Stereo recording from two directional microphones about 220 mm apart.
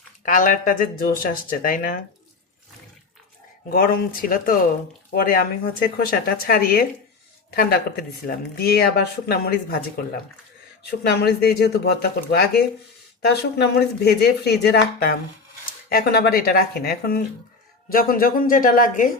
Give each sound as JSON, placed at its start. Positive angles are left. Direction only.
{"t": 0.3, "sound": "speech", "side_deg": 35}
{"t": 3.7, "sound": "speech", "side_deg": 40}
{"t": 11.0, "sound": "speech", "side_deg": 45}